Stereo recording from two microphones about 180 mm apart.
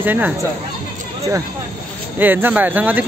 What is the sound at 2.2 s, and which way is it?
Speech, 10° right (ahead or behind).